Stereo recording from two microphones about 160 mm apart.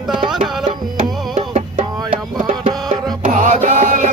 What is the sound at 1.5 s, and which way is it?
Music, 35° right (ahead or behind).